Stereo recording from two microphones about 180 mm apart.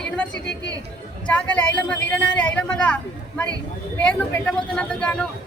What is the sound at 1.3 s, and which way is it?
A man's voice, 5° left (ahead or behind).